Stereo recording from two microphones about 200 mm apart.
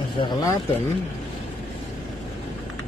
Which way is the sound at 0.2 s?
15° left (ahead or behind).